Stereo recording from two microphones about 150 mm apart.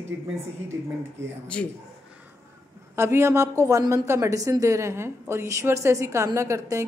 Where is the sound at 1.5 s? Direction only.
10° left (ahead or behind).